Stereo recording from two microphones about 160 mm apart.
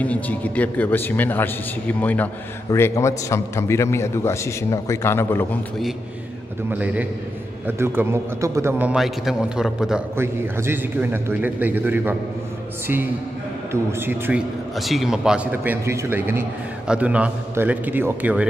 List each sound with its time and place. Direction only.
0.0 s a man's voice: 10° left (ahead or behind)
6.7 s a man's voice: 10° right (ahead or behind)
10.1 s a man's voice: 15° right (ahead or behind)
13.7 s a man's voice: 15° right (ahead or behind)
14.8 s a man's voice: centre (ahead or behind)